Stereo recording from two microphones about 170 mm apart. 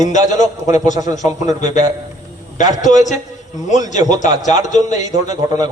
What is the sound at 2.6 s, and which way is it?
A man's voice, 45° left (ahead or behind).